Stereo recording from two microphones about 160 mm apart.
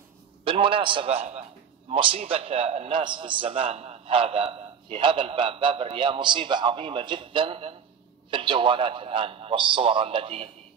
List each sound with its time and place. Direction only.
0.5 s a man's voice: 35° right (ahead or behind)
3.0 s a man's voice: 30° right (ahead or behind)